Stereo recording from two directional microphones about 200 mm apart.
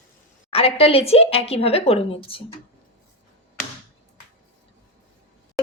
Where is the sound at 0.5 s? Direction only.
30° left (ahead or behind).